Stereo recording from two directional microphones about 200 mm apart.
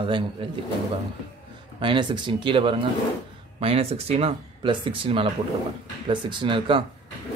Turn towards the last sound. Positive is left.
turn(degrees=-25)  # may be behind; listen again after turning